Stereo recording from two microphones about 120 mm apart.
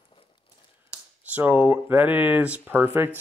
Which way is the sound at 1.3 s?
15° right (ahead or behind).